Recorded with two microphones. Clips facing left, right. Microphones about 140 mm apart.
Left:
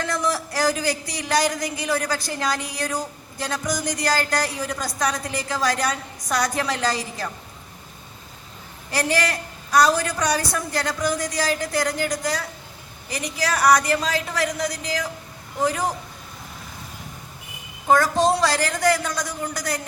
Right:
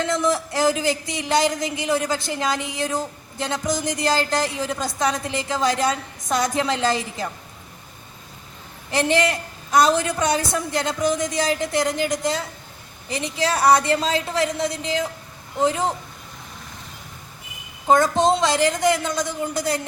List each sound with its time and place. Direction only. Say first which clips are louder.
0.0 s speech: right 3 dB; 20° right (ahead or behind)
8.9 s speech: right 3 dB; 20° right (ahead or behind)
17.8 s speech: right 1 dB; 20° right (ahead or behind)